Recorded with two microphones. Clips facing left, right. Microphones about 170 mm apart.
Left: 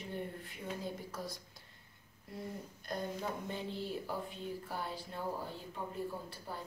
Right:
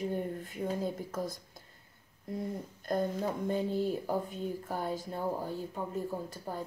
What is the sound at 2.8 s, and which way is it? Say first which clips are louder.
Speech: right 8 dB; 45° right (ahead or behind).